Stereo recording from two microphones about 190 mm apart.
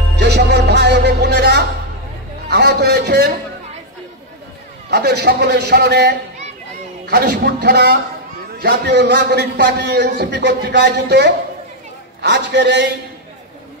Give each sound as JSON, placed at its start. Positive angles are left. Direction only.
{"t": 0.2, "sound": "music", "side_deg": -60}
{"t": 2.5, "sound": "a man's voice", "side_deg": -60}
{"t": 4.9, "sound": "a man's voice", "side_deg": -60}